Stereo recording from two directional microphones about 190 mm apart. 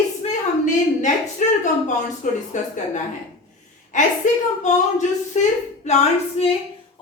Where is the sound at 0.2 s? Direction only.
40° left (ahead or behind).